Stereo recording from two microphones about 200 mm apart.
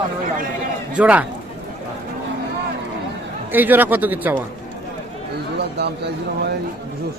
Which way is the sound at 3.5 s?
10° right (ahead or behind).